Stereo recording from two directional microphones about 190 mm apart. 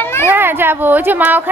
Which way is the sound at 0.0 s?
15° left (ahead or behind).